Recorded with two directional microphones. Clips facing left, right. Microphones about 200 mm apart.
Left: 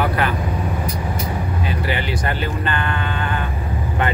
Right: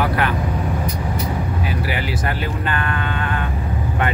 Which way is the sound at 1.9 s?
5° right (ahead or behind).